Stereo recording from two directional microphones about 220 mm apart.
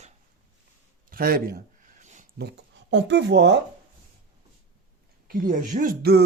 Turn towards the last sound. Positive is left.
turn(degrees=-45)  # may be behind; listen again after turning